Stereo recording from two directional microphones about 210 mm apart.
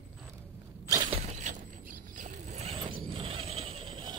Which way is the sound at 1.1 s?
30° right (ahead or behind).